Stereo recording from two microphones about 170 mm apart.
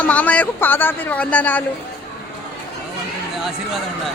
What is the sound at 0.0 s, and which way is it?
Speech, 10° left (ahead or behind).